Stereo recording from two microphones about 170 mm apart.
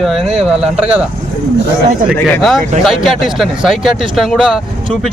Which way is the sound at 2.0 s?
Centre (ahead or behind).